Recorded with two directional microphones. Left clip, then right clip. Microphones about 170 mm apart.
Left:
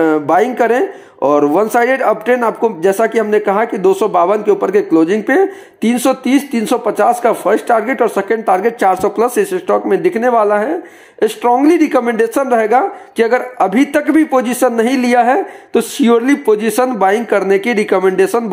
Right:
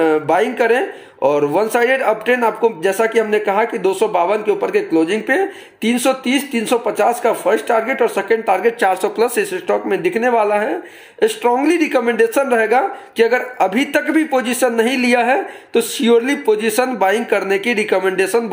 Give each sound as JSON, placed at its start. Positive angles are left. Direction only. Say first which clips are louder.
{"t": 0.0, "sound": "speech", "louder": "left 3 dB", "side_deg": 30}